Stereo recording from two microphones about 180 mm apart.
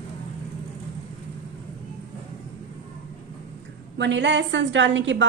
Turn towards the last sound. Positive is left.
turn(degrees=-90)